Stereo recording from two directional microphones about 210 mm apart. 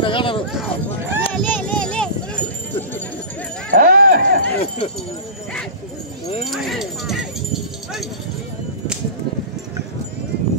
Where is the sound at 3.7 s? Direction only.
45° right (ahead or behind).